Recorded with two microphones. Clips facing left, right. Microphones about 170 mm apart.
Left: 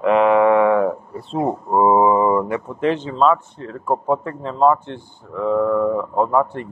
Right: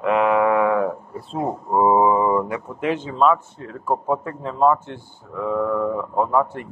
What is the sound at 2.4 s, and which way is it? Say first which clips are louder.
Speech: left 4 dB; 5° right (ahead or behind).